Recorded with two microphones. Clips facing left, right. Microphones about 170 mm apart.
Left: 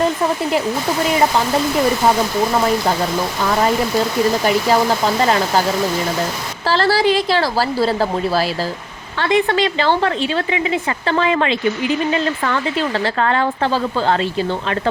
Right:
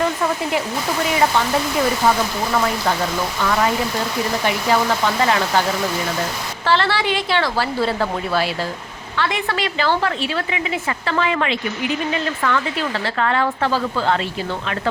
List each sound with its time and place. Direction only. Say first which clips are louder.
4.4 s speech: even; 35° left (ahead or behind)
6.7 s a woman's voice: left 4 dB; 35° left (ahead or behind)